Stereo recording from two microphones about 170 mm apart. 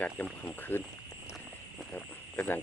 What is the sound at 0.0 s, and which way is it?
Speech, 10° left (ahead or behind).